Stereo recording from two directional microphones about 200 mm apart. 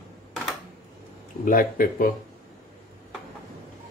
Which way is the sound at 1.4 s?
45° left (ahead or behind).